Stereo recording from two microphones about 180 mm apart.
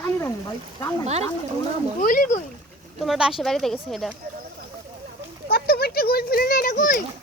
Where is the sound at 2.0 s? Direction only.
45° left (ahead or behind).